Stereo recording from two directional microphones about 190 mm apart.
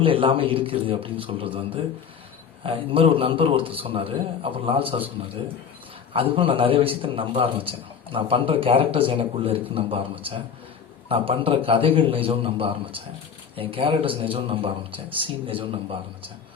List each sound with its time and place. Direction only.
0.0 s a man's voice: 25° right (ahead or behind)
6.1 s a man's voice: 30° right (ahead or behind)